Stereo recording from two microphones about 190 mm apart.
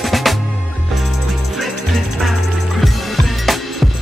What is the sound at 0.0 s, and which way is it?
Music, centre (ahead or behind).